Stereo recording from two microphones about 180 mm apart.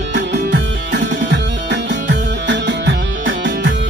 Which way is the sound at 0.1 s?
75° right (ahead or behind).